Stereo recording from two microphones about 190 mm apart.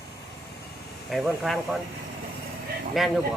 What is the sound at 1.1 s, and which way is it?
Speech, centre (ahead or behind).